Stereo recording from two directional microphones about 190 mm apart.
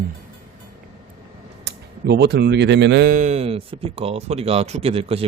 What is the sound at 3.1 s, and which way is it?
Speech, 35° right (ahead or behind).